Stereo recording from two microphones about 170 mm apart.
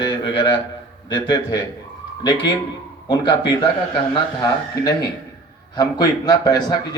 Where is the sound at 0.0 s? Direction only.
25° left (ahead or behind).